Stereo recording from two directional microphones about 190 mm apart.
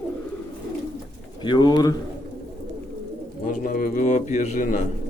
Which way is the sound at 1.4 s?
25° left (ahead or behind).